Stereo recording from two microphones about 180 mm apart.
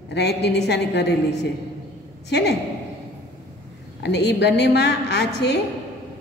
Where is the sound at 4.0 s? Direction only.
70° left (ahead or behind).